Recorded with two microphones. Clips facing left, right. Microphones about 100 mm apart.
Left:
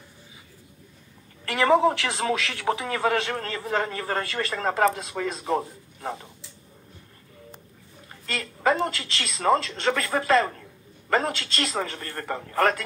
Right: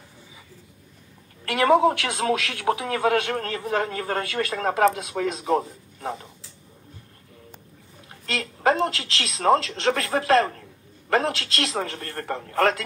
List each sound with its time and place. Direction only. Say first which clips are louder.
1.4 s a man's voice: right 2 dB; 60° right (ahead or behind)
8.1 s a woman's voice: right 3 dB; 70° right (ahead or behind)